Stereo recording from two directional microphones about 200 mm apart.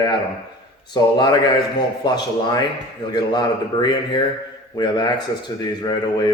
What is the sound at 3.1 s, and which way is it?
Speech, 20° left (ahead or behind).